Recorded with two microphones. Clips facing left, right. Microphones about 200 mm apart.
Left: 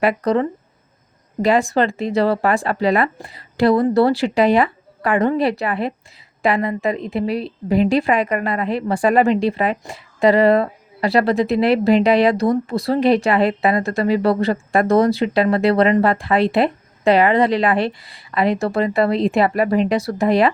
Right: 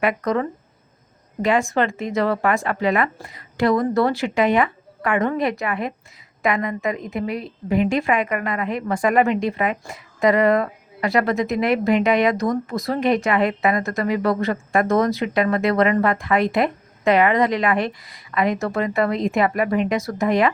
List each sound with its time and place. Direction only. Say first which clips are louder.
0.0 s a woman's voice: left 4 dB; 30° left (ahead or behind)